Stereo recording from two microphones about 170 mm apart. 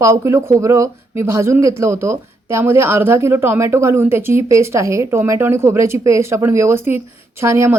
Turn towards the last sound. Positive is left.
turn(degrees=-15)  # may be behind; listen again after turning